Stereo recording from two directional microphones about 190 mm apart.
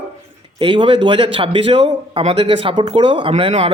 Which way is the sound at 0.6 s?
30° right (ahead or behind).